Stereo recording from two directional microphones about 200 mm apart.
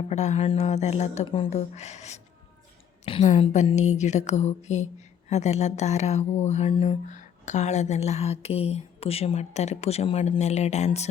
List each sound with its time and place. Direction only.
0.1 s speech: 35° left (ahead or behind)